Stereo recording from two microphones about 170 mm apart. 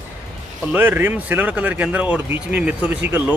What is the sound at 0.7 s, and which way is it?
Speech, 10° right (ahead or behind).